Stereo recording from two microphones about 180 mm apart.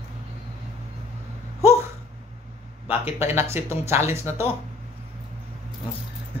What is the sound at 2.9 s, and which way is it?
Speech, 15° right (ahead or behind).